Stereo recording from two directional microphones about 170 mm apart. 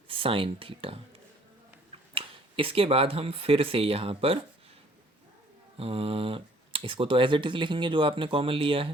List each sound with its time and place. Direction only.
0.1 s speech: 30° right (ahead or behind)
5.7 s speech: 35° right (ahead or behind)